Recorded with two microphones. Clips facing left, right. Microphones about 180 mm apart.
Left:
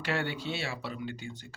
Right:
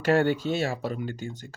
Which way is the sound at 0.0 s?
45° right (ahead or behind).